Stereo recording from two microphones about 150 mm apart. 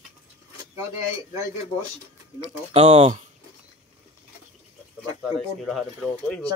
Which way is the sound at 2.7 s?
40° right (ahead or behind).